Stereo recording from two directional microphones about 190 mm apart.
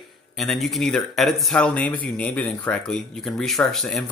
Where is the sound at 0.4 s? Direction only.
Centre (ahead or behind).